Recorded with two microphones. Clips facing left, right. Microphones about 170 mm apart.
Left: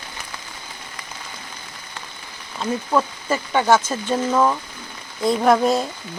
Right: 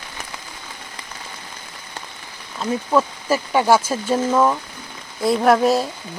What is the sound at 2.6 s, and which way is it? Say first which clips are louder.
Speech: right 2 dB; 5° right (ahead or behind).